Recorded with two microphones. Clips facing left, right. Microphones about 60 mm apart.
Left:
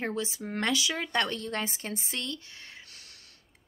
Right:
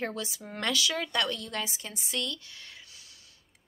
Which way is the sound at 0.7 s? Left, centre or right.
Left.